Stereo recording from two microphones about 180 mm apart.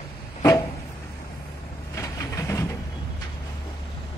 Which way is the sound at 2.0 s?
15° left (ahead or behind).